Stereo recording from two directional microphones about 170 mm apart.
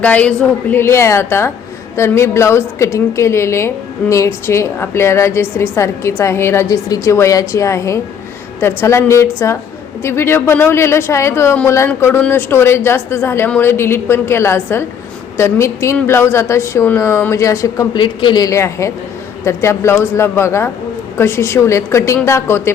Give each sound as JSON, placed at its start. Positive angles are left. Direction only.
{"t": 0.0, "sound": "a woman's voice", "side_deg": 10}